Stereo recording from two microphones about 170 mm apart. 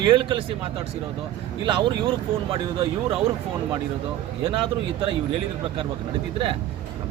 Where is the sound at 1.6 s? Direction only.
30° right (ahead or behind).